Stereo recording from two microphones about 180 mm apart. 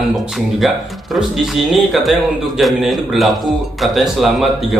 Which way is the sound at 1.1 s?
Centre (ahead or behind).